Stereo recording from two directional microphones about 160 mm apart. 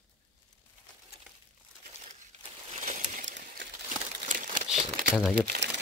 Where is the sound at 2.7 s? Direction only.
50° right (ahead or behind).